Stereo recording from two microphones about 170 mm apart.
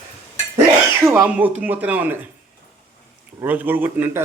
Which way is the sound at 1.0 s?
10° right (ahead or behind).